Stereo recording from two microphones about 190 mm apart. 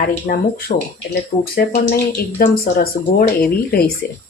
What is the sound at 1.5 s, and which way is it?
Speech, 50° left (ahead or behind).